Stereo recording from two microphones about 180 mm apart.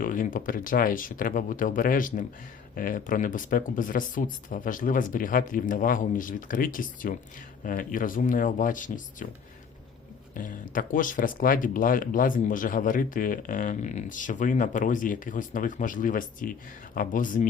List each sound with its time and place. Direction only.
0.0 s speech: 50° left (ahead or behind)
10.3 s speech: 50° left (ahead or behind)